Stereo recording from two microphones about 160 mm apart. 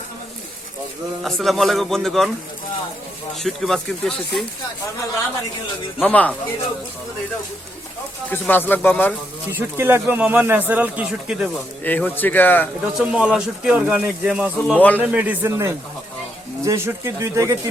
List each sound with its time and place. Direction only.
1.2 s speech: centre (ahead or behind)
3.4 s speech: centre (ahead or behind)
6.0 s speech: 10° left (ahead or behind)
8.3 s speech: 10° left (ahead or behind)
9.5 s speech: 15° right (ahead or behind)
11.8 s speech: 10° left (ahead or behind)
13.0 s speech: 5° right (ahead or behind)
14.8 s speech: 10° left (ahead or behind)
15.0 s speech: 10° right (ahead or behind)